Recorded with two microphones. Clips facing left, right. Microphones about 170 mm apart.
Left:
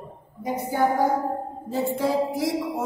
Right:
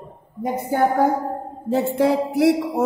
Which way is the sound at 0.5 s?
55° right (ahead or behind).